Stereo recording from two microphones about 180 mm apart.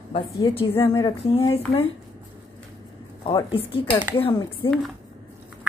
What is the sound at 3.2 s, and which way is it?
Speech, 30° left (ahead or behind).